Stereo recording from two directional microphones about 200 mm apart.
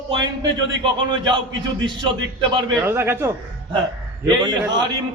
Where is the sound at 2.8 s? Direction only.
10° right (ahead or behind).